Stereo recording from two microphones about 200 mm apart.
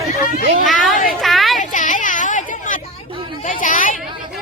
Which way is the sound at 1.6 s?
40° left (ahead or behind).